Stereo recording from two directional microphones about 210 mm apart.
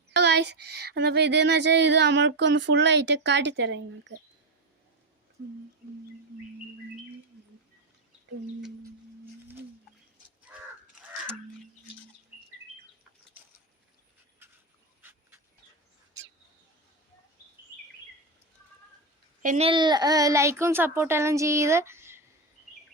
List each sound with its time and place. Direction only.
0.1 s a sound: 55° right (ahead or behind)
15.0 s dog: 10° right (ahead or behind)
19.4 s a child's voice: 35° right (ahead or behind); by 22.2 s 10° right (ahead or behind)